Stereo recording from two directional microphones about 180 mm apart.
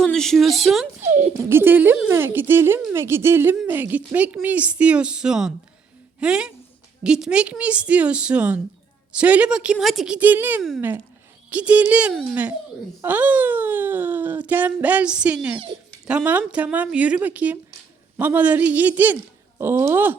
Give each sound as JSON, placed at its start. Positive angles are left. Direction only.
{"t": 0.0, "sound": "speech", "side_deg": 5}
{"t": 1.0, "sound": "speech", "side_deg": -40}
{"t": 1.5, "sound": "a woman's voice", "side_deg": -10}